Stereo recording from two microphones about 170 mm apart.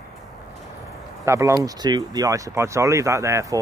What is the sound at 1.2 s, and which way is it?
Speech, 15° right (ahead or behind).